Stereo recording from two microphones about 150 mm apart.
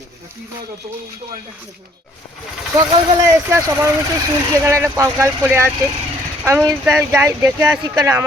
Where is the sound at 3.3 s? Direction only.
20° right (ahead or behind).